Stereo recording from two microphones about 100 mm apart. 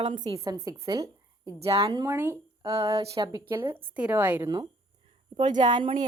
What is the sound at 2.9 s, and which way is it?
Speech, 85° right.